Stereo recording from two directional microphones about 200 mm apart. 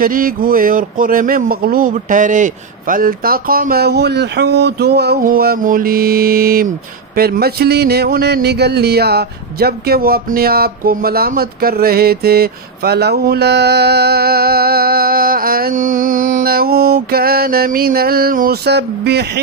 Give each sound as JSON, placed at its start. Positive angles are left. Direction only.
{"t": 0.0, "sound": "speech", "side_deg": -45}